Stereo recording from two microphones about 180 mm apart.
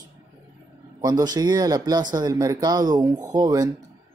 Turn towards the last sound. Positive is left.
turn(degrees=-20)  # may be behind; listen again after turning